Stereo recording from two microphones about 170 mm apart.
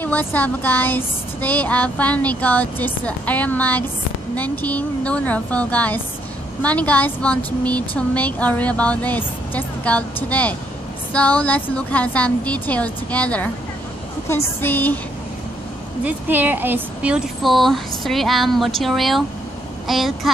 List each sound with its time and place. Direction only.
0.0 s speech: 10° left (ahead or behind)
16.0 s speech: 10° right (ahead or behind)